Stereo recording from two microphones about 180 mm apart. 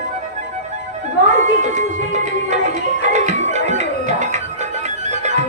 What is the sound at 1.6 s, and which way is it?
Music, 40° right (ahead or behind).